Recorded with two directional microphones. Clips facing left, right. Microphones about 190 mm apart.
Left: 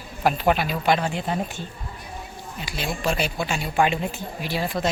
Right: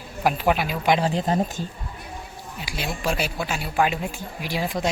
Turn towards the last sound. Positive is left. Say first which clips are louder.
# even
turn(degrees=-15)  # may be behind; listen again after turning